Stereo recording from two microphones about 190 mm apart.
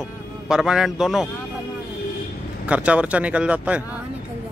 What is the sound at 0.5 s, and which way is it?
Speech, 5° right (ahead or behind).